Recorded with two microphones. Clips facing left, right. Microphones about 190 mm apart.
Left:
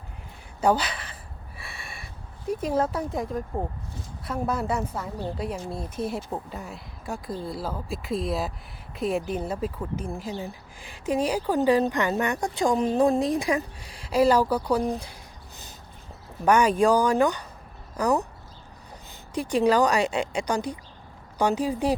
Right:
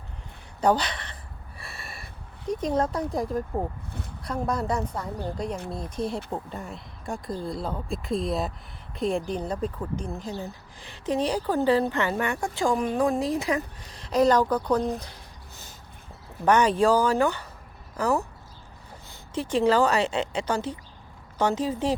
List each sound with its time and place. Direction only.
0.6 s speech: 5° left (ahead or behind)
1.5 s a sound: centre (ahead or behind)
2.5 s speech: 5° left (ahead or behind)
12.9 s speech: 30° left (ahead or behind); by 15.1 s 10° left (ahead or behind)
16.5 s speech: 10° left (ahead or behind)
19.3 s speech: 15° left (ahead or behind)